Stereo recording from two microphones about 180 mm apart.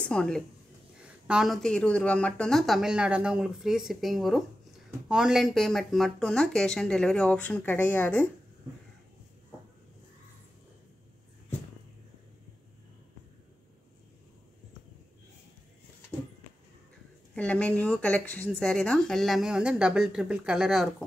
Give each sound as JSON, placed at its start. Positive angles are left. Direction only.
{"t": 0.0, "sound": "speech", "side_deg": 5}
{"t": 17.4, "sound": "speech", "side_deg": 5}